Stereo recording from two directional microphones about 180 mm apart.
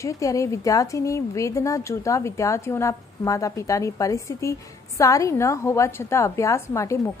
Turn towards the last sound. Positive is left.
turn(degrees=15)  # may be behind; listen again after turning